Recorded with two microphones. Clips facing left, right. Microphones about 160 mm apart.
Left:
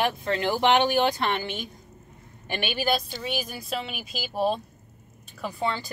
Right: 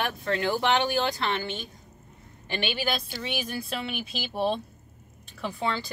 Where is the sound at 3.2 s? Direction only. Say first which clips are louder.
Even; 5° left (ahead or behind).